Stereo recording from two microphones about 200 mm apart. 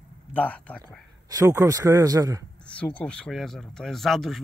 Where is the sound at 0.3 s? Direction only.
5° left (ahead or behind).